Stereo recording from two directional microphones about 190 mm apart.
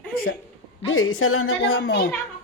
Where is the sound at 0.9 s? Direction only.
90° left; by 2.0 s 65° left (ahead or behind).